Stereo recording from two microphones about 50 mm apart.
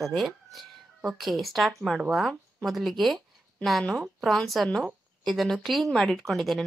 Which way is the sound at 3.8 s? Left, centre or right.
Centre.